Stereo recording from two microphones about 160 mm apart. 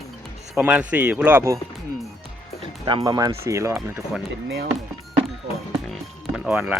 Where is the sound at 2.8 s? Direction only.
30° right (ahead or behind).